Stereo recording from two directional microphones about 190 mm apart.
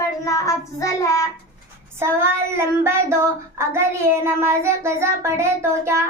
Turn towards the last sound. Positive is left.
turn(degrees=-15)  # may be behind; listen again after turning